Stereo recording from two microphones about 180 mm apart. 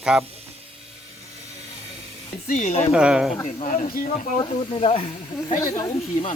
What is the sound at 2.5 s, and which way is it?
Speech, 45° left (ahead or behind).